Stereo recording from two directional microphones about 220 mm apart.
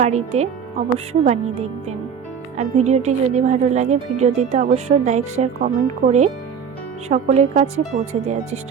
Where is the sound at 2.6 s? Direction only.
30° right (ahead or behind).